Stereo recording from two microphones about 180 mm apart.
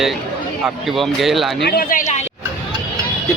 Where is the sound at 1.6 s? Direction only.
60° left (ahead or behind).